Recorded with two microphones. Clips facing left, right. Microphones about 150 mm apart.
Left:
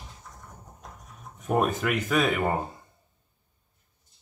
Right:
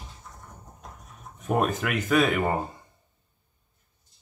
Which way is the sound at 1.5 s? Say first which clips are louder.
Left 1 dB; centre (ahead or behind).